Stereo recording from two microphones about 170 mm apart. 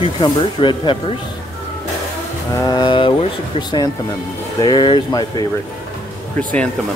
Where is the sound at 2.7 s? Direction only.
30° left (ahead or behind).